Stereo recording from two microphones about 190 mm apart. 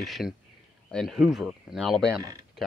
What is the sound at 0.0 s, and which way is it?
Speech, centre (ahead or behind).